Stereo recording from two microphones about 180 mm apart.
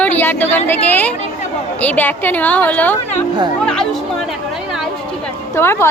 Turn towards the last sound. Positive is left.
turn(degrees=15)  # may be behind; listen again after turning